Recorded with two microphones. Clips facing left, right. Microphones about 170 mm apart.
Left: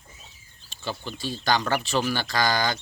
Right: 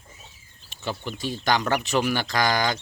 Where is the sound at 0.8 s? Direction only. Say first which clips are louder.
Right 2 dB; 20° right (ahead or behind).